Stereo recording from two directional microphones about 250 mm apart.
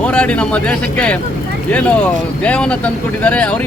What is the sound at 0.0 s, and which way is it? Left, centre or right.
Speech, centre.